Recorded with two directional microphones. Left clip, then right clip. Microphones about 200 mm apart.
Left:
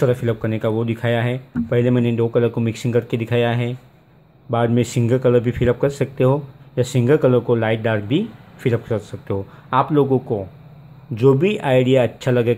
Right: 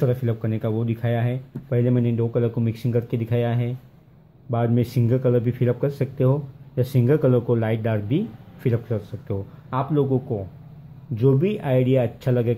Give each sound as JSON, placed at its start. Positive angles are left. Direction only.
{"t": 0.0, "sound": "speech", "side_deg": 20}